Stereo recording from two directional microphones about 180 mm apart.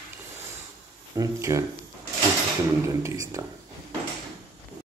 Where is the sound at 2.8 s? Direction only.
15° right (ahead or behind).